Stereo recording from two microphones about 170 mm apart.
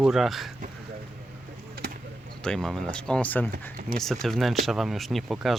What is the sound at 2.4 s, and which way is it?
Speech, 5° left (ahead or behind).